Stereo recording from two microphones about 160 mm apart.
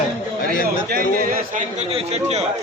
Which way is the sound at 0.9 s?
60° right (ahead or behind).